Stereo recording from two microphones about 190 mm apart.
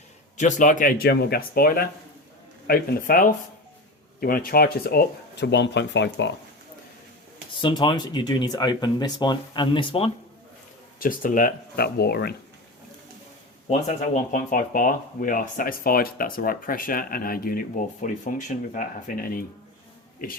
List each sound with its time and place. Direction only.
0.3 s speech: 40° left (ahead or behind); by 6.3 s 65° left (ahead or behind)
7.6 s speech: 25° left (ahead or behind)
11.0 s speech: 45° left (ahead or behind)
13.7 s speech: 40° left (ahead or behind)